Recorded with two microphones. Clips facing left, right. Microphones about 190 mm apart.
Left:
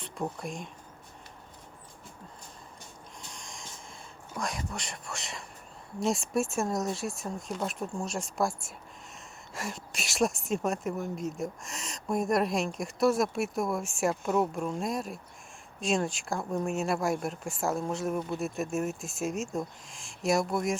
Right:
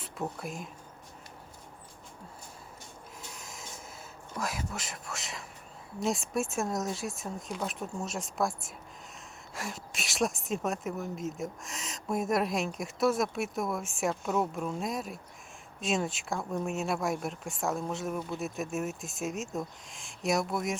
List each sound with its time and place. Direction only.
0.0 s speech: 5° right (ahead or behind)
3.2 s snort: 5° right (ahead or behind)
4.4 s speech: 5° right (ahead or behind)